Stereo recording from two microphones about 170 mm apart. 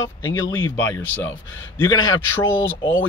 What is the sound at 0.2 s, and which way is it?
Speech, 15° left (ahead or behind).